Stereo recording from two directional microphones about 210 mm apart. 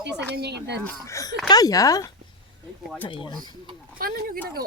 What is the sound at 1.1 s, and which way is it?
Speech, 15° left (ahead or behind).